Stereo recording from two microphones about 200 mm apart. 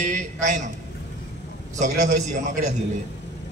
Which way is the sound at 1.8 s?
40° right (ahead or behind).